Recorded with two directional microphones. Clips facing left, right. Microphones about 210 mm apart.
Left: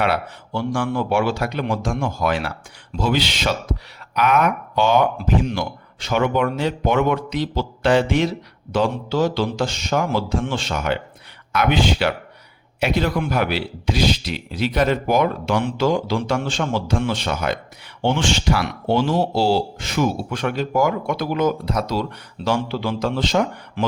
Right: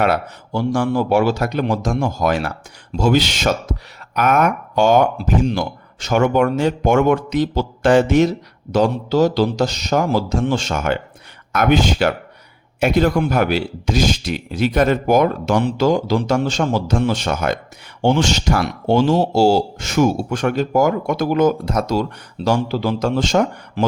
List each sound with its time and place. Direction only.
0.0 s a man's voice: 40° right (ahead or behind)